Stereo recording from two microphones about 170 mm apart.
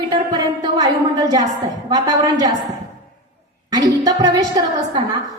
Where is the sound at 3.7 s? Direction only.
25° right (ahead or behind).